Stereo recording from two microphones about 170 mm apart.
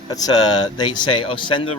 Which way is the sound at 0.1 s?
20° left (ahead or behind).